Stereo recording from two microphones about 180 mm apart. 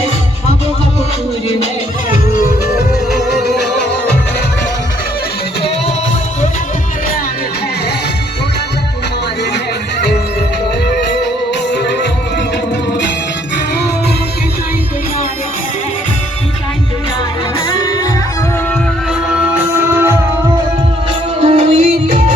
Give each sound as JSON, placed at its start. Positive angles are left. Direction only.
{"t": 3.1, "sound": "music", "side_deg": 0}
{"t": 17.7, "sound": "music", "side_deg": 20}
{"t": 19.4, "sound": "music", "side_deg": -10}
{"t": 21.4, "sound": "music", "side_deg": -35}